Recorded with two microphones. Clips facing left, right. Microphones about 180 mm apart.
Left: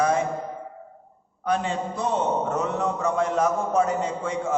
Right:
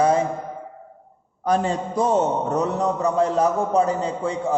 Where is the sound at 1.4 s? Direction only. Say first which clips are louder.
Right 4 dB; 40° right (ahead or behind).